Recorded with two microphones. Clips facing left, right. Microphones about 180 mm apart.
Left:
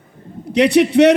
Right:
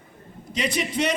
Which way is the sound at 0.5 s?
70° left (ahead or behind).